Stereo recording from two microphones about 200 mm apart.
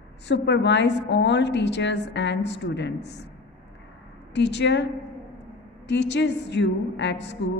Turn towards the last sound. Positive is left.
turn(degrees=60)  # may be behind; listen again after turning